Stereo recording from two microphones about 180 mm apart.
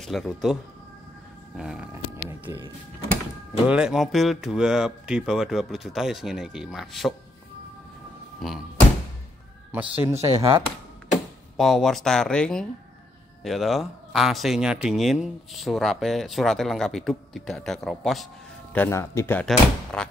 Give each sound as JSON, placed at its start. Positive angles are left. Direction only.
{"t": 0.0, "sound": "speech", "side_deg": 0}
{"t": 1.6, "sound": "speech", "side_deg": -5}
{"t": 3.6, "sound": "speech", "side_deg": -5}
{"t": 8.4, "sound": "speech", "side_deg": 0}
{"t": 9.7, "sound": "speech", "side_deg": -10}
{"t": 11.5, "sound": "speech", "side_deg": 0}
{"t": 18.7, "sound": "speech", "side_deg": 10}